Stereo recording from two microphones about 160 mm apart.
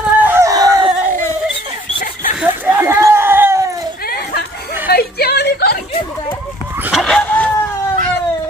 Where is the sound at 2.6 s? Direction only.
15° right (ahead or behind).